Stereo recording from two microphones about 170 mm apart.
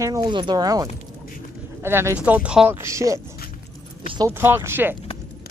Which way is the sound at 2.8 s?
20° right (ahead or behind).